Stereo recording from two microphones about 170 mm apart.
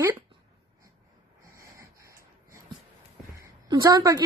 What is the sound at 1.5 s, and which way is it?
Dog, 15° right (ahead or behind).